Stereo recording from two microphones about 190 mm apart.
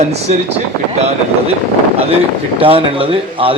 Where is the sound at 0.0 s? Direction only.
35° right (ahead or behind).